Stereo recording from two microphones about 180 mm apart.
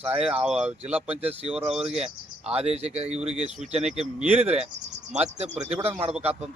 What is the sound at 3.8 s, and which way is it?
Speech, 5° right (ahead or behind).